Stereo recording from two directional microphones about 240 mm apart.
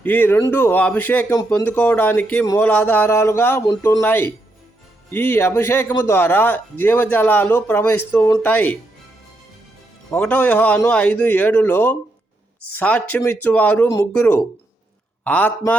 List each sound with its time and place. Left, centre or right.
0.0 s a man's voice: centre
10.1 s a man's voice: centre